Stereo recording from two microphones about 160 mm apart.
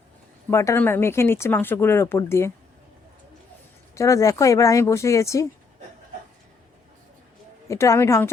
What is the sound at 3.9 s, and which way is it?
Speech, 20° left (ahead or behind).